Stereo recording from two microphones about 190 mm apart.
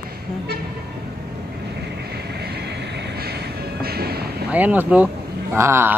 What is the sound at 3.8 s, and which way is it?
Music, 55° right (ahead or behind).